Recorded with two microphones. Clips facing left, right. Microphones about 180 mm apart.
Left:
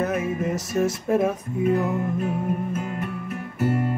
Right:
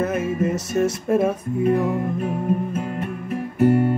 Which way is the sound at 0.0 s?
Centre (ahead or behind).